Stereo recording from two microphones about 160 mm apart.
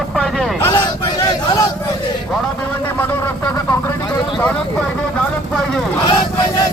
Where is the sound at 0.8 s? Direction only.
20° left (ahead or behind).